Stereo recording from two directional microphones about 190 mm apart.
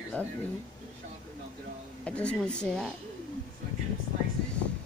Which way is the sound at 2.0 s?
5° left (ahead or behind).